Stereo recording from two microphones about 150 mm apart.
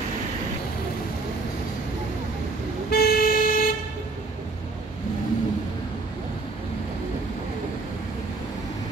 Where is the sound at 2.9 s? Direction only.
90° left; by 3.7 s 75° left (ahead or behind).